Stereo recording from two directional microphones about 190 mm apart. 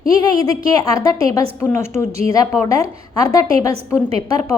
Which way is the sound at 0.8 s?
20° left (ahead or behind).